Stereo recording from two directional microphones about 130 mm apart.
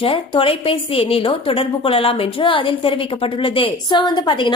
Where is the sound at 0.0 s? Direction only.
45° left (ahead or behind).